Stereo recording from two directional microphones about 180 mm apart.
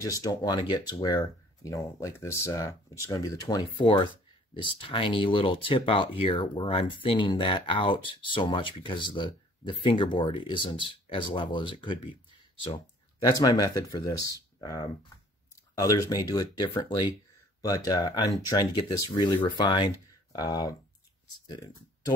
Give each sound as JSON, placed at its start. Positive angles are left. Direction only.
{"t": 0.0, "sound": "speech", "side_deg": 20}